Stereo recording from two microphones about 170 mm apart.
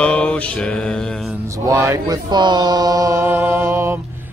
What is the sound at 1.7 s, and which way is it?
Mantra, 15° right (ahead or behind).